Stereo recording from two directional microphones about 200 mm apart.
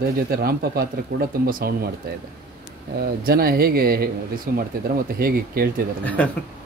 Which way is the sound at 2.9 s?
50° right (ahead or behind).